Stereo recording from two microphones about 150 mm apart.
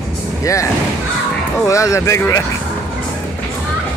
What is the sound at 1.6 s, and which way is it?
Speech, 20° left (ahead or behind).